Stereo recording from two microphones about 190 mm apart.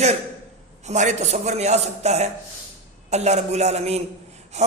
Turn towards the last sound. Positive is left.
turn(degrees=-35)  # may be behind; listen again after turning